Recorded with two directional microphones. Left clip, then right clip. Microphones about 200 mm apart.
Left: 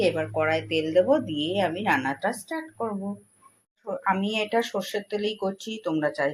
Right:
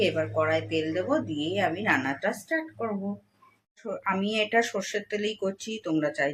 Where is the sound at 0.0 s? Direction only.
15° left (ahead or behind).